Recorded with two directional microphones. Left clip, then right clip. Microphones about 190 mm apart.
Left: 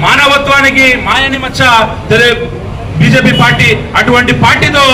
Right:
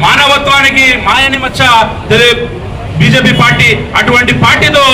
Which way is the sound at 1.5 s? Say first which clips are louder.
Left 1 dB; 15° right (ahead or behind).